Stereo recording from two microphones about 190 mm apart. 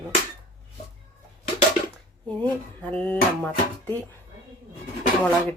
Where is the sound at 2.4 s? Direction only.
5° left (ahead or behind).